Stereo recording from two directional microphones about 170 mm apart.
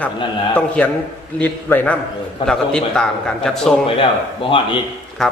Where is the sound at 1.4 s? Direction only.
10° left (ahead or behind).